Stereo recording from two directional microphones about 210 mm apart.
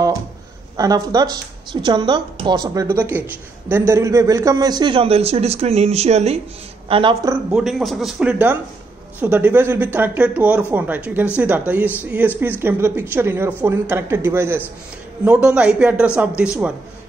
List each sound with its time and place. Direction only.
0.7 s a woman's voice: 15° right (ahead or behind)
7.5 s a man's voice: centre (ahead or behind)